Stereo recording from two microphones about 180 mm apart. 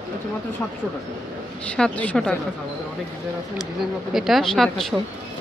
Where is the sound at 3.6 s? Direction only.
Centre (ahead or behind).